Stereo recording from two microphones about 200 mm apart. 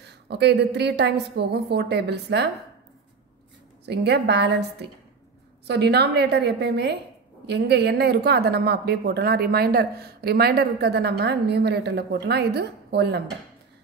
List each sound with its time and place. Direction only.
0.0 s a woman's voice: 55° right (ahead or behind)
3.8 s a woman's voice: 55° right (ahead or behind)